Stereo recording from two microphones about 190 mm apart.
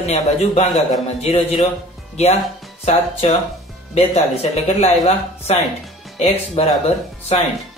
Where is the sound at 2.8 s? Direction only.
30° left (ahead or behind).